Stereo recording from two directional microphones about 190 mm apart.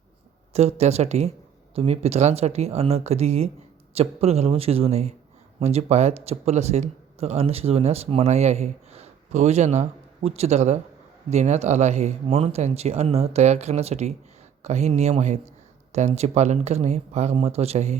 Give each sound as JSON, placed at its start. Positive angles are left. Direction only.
{"t": 0.5, "sound": "speech", "side_deg": -35}